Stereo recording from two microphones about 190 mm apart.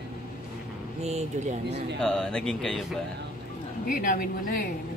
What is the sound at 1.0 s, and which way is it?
Speech, 35° right (ahead or behind).